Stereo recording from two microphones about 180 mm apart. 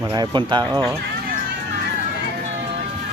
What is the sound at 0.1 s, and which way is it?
Speech, 25° right (ahead or behind).